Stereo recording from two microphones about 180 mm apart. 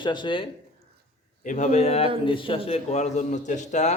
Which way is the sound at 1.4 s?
45° left (ahead or behind).